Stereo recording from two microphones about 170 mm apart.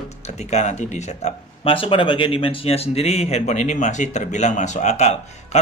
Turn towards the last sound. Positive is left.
turn(degrees=40)  # may be behind; listen again after turning